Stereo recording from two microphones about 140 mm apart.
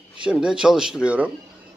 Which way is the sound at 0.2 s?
5° right (ahead or behind).